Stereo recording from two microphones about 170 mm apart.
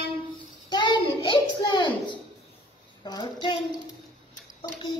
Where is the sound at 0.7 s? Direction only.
25° left (ahead or behind).